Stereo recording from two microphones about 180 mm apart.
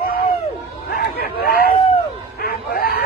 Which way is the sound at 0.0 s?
60° left (ahead or behind).